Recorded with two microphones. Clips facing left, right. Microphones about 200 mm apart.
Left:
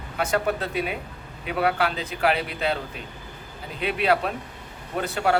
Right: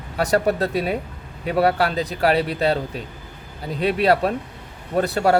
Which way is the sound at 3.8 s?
40° right (ahead or behind).